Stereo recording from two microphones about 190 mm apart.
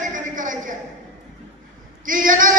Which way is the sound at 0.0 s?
45° right (ahead or behind).